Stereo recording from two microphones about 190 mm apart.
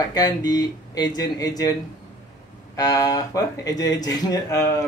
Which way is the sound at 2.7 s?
15° left (ahead or behind).